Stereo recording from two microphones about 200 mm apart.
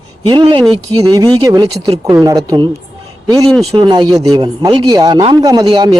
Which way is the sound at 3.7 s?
20° right (ahead or behind).